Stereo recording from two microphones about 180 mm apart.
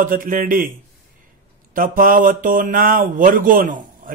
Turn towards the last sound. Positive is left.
turn(degrees=-50)  # may be behind; listen again after turning